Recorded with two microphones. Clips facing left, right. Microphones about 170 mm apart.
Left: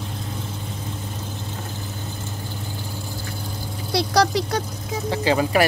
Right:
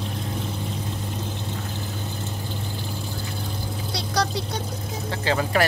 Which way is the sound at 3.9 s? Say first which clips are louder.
Left 7 dB; 70° left (ahead or behind).